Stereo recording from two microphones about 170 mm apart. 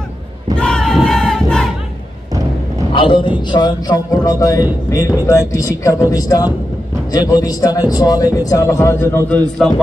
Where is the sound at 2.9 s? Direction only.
30° left (ahead or behind).